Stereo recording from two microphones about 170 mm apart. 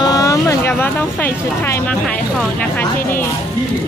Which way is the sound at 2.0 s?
5° left (ahead or behind).